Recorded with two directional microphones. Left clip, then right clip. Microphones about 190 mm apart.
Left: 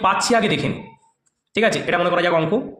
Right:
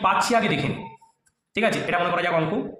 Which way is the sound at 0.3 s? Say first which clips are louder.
Left 3 dB; 35° left (ahead or behind).